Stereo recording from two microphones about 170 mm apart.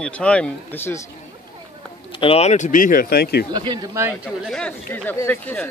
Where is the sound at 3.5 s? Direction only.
25° right (ahead or behind).